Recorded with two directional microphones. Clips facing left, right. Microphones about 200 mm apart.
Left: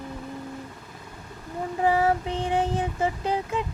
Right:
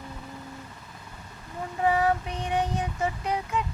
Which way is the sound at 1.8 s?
30° left (ahead or behind).